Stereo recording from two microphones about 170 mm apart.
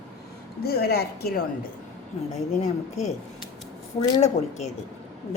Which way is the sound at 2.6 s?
40° left (ahead or behind).